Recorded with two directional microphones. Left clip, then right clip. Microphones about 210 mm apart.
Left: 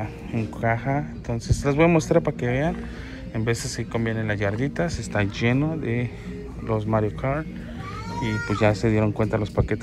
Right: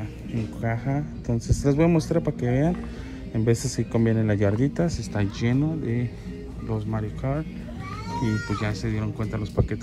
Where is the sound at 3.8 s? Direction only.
20° right (ahead or behind).